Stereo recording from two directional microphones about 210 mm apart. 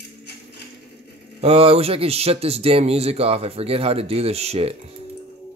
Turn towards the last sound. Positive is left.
turn(degrees=-30)  # may be behind; listen again after turning